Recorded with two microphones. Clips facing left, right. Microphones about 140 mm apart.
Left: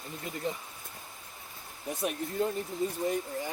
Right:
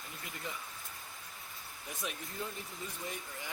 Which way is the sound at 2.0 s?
50° left (ahead or behind).